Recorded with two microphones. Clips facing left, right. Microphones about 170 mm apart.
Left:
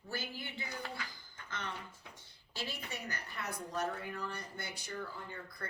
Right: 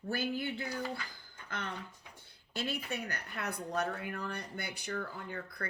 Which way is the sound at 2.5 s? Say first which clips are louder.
Right 6 dB; 60° right (ahead or behind).